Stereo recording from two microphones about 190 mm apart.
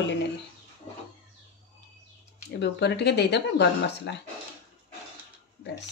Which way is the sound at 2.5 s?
65° left (ahead or behind).